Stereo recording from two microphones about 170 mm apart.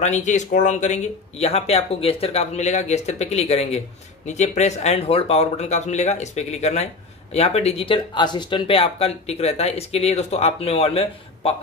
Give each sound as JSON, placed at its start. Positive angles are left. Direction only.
{"t": 0.0, "sound": "speech", "side_deg": 45}